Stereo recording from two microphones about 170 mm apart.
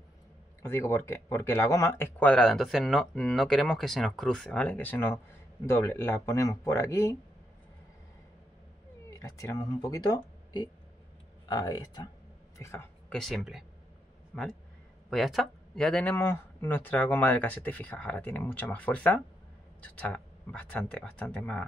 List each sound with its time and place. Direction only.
0.6 s speech: 15° left (ahead or behind)
9.2 s speech: 20° left (ahead or behind)
13.1 s speech: centre (ahead or behind)